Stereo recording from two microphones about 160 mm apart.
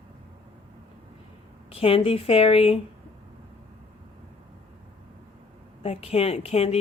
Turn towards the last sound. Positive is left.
turn(degrees=40)  # may be behind; listen again after turning